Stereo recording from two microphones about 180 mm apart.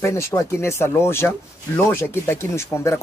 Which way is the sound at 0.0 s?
15° left (ahead or behind).